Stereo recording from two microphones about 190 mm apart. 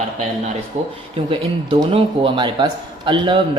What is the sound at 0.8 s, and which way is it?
Speech, 40° right (ahead or behind).